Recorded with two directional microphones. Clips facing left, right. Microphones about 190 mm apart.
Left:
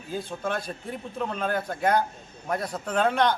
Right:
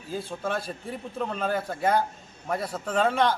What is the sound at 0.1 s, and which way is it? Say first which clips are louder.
A man's voice: even; centre (ahead or behind).